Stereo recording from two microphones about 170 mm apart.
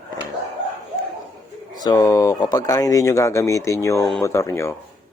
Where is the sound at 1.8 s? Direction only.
20° left (ahead or behind).